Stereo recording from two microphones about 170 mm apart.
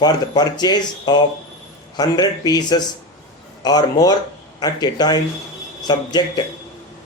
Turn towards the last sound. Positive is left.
turn(degrees=25)  # may be behind; listen again after turning